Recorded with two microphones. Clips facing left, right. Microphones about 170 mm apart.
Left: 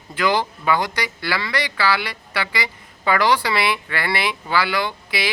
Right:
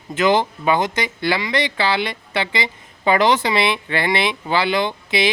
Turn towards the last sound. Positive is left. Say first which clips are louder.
# right 4 dB
turn(degrees=-20)  # may be behind; listen again after turning